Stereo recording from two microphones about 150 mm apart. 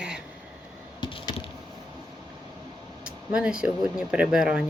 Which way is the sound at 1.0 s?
35° left (ahead or behind).